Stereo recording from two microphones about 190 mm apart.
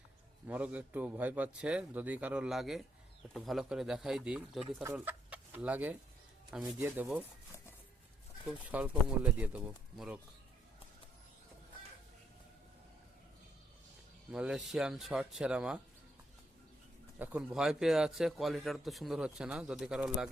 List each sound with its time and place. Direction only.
0.4 s a man's voice: 10° right (ahead or behind)
8.4 s a man's voice: 5° right (ahead or behind)
14.3 s speech: 5° right (ahead or behind)
17.2 s speech: 10° right (ahead or behind)